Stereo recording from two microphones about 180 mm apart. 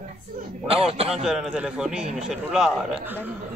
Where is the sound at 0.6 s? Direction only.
30° right (ahead or behind).